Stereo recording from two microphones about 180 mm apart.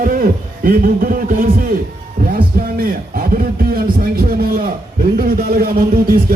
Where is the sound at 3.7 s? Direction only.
55° right (ahead or behind).